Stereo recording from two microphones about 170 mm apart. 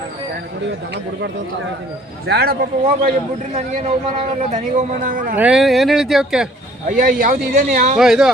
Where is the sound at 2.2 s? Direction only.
70° right (ahead or behind).